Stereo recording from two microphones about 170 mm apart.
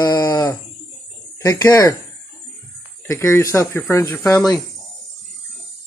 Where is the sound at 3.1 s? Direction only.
15° left (ahead or behind).